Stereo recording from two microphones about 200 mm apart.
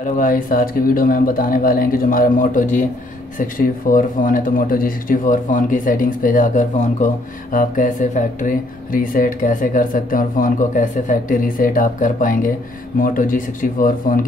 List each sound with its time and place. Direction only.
0.2 s speech: 45° left (ahead or behind)